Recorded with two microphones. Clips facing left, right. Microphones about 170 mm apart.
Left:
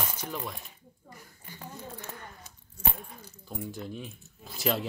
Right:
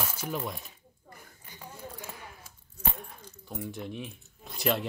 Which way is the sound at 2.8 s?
10° left (ahead or behind).